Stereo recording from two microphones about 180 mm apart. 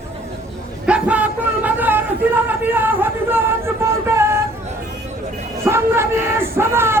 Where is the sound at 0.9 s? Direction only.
5° right (ahead or behind).